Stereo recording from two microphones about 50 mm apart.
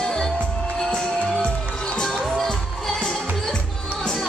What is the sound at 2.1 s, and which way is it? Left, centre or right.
Music, centre.